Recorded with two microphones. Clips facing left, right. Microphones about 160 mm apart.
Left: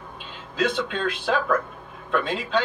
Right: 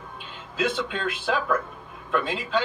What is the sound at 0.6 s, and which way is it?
A man's voice, 5° right (ahead or behind).